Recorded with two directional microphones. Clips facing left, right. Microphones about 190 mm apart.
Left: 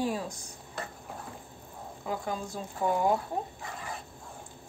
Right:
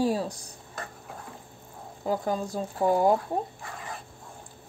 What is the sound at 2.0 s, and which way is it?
A woman's voice, 35° right (ahead or behind).